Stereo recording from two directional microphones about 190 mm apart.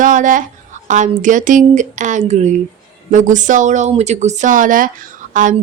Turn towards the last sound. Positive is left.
turn(degrees=-45)  # may be behind; listen again after turning